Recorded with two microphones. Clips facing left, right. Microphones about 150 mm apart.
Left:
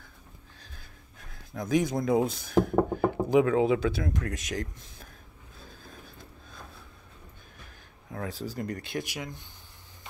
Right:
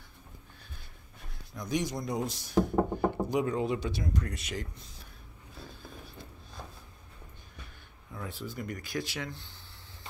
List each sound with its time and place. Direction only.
1.5 s speech: 55° left (ahead or behind)
3.3 s speech: 90° left
4.1 s speech: 45° left (ahead or behind)
8.3 s speech: 40° left (ahead or behind); by 9.4 s 15° left (ahead or behind)